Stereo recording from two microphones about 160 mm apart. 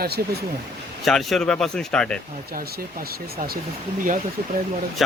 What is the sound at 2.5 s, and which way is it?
Speech, 65° right (ahead or behind).